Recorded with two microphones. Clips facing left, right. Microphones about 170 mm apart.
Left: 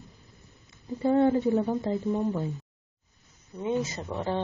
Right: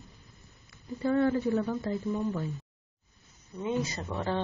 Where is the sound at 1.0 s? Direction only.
25° left (ahead or behind).